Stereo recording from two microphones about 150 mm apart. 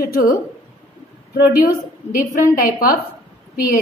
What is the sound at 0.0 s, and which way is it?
Speech, 80° left.